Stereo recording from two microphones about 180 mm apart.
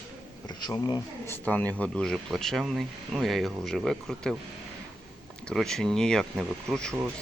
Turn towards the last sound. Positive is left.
turn(degrees=5)  # may be behind; listen again after turning